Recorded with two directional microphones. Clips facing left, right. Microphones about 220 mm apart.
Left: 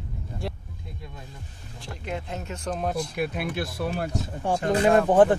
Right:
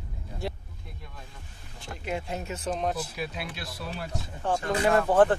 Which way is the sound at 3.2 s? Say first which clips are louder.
Left 7 dB; 55° left (ahead or behind).